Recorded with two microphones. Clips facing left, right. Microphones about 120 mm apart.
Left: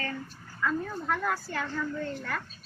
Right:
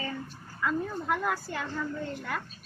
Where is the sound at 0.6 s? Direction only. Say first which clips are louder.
Even; 10° right (ahead or behind).